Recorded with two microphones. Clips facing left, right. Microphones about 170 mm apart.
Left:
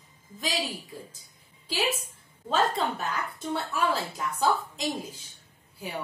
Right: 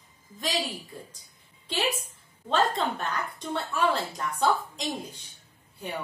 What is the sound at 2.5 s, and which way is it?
A woman's voice, 5° left (ahead or behind).